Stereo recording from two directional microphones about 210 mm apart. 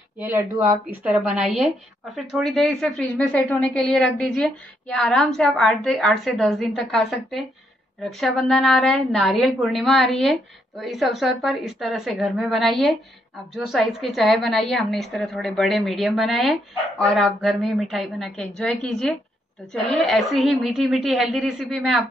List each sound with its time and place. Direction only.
0.2 s a woman's voice: 10° right (ahead or behind)